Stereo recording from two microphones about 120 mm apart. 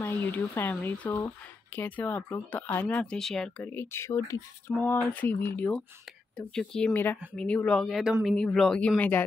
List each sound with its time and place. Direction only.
0.0 s speech: 20° left (ahead or behind)
3.5 s speech: 15° left (ahead or behind)